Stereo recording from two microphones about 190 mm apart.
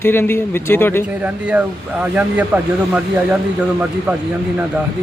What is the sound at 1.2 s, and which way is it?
Speech, 5° right (ahead or behind).